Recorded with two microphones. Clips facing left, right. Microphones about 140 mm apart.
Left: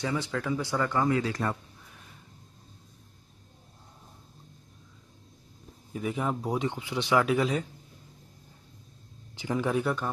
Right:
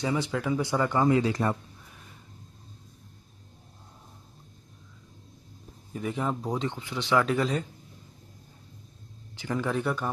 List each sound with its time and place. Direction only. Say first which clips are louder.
0.0 s speech: right 2 dB; 15° right (ahead or behind)
5.9 s speech: even; centre (ahead or behind)
9.4 s speech: left 1 dB; 15° left (ahead or behind)
9.8 s speech: left 1 dB; centre (ahead or behind)